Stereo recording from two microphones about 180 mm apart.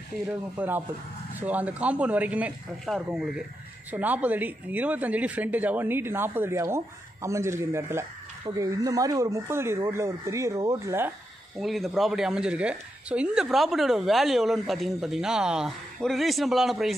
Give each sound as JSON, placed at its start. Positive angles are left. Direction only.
{"t": 0.3, "sound": "a woman's voice", "side_deg": -10}
{"t": 11.5, "sound": "a woman's voice", "side_deg": 0}